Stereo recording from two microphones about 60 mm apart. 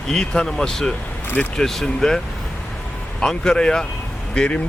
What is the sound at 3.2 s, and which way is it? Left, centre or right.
Speech, centre.